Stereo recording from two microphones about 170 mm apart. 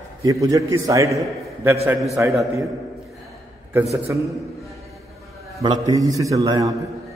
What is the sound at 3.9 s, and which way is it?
Speech, 15° right (ahead or behind).